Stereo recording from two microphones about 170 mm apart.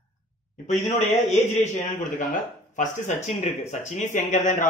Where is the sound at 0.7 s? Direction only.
45° left (ahead or behind).